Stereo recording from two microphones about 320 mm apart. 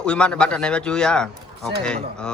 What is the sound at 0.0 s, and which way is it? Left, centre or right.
A man's voice, centre.